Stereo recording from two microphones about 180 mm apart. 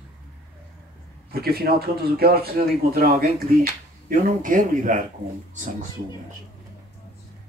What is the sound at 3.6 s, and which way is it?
Speech, 50° right (ahead or behind).